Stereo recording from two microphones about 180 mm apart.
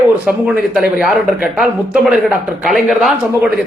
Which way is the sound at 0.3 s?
5° right (ahead or behind).